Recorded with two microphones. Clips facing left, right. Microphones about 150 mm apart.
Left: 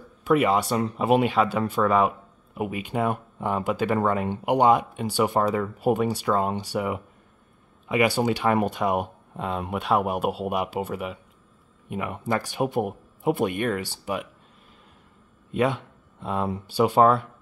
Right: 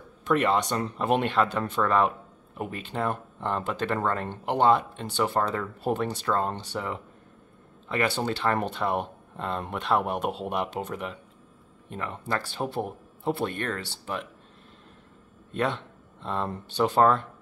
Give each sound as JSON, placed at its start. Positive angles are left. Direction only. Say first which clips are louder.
{"t": 0.2, "sound": "speech", "louder": "left 3 dB", "side_deg": 10}
{"t": 15.5, "sound": "speech", "louder": "left 4 dB", "side_deg": 10}